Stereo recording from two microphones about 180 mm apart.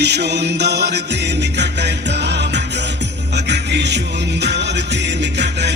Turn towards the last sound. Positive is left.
turn(degrees=-70)  # may be behind; listen again after turning